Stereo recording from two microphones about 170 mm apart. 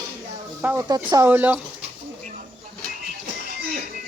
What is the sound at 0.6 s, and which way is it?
Speech, 15° right (ahead or behind).